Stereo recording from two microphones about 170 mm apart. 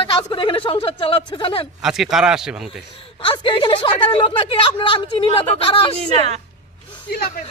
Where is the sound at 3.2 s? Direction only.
30° left (ahead or behind).